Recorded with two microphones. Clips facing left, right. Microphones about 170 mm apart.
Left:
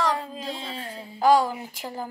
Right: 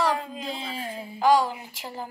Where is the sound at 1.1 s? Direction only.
40° left (ahead or behind).